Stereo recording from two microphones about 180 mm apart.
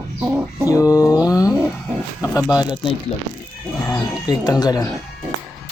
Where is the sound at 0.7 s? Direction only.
20° left (ahead or behind).